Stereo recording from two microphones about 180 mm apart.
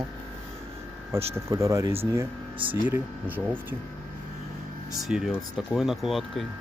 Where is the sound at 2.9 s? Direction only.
10° right (ahead or behind).